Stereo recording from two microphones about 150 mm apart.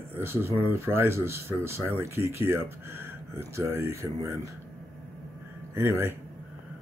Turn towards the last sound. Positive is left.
turn(degrees=-15)  # may be behind; listen again after turning